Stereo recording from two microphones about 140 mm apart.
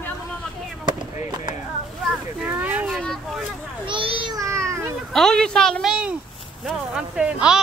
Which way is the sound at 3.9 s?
40° right (ahead or behind).